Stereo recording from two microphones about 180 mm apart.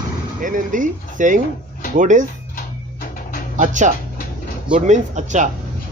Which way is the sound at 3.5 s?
45° right (ahead or behind).